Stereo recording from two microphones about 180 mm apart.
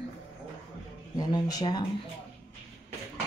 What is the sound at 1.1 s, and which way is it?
Speech, 20° left (ahead or behind).